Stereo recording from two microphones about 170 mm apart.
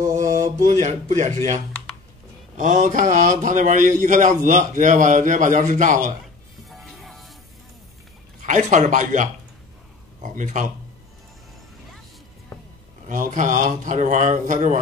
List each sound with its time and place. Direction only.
0.1 s mantra: 20° right (ahead or behind)
0.7 s speech: 45° right (ahead or behind)
2.5 s speech: 45° right (ahead or behind)
7.0 s music: centre (ahead or behind)
8.5 s speech: 45° right (ahead or behind)
13.1 s speech: 50° right (ahead or behind)